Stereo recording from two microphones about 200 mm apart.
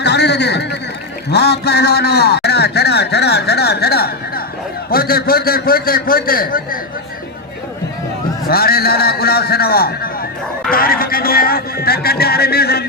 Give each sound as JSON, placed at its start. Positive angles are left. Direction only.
{"t": 0.0, "sound": "a sound", "side_deg": 55}
{"t": 1.3, "sound": "a man's voice", "side_deg": 55}
{"t": 8.4, "sound": "a man's voice", "side_deg": 50}